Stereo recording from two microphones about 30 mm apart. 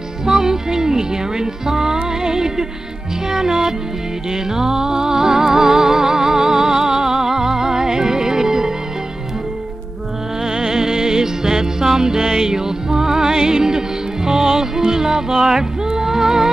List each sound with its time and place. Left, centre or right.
0.2 s music: centre
10.4 s music: centre